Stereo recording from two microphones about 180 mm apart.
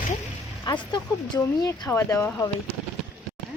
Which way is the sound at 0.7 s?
25° left (ahead or behind).